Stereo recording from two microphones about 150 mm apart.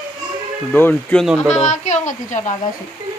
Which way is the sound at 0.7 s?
10° left (ahead or behind).